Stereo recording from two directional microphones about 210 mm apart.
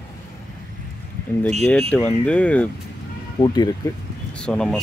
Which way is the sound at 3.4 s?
25° left (ahead or behind).